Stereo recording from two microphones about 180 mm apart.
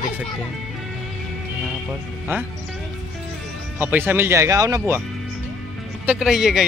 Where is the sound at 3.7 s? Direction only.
10° right (ahead or behind).